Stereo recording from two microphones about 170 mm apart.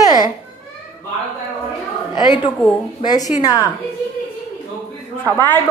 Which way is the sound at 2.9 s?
25° left (ahead or behind).